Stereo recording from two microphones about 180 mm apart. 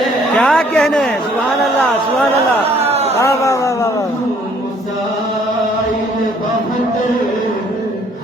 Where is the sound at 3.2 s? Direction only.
15° left (ahead or behind).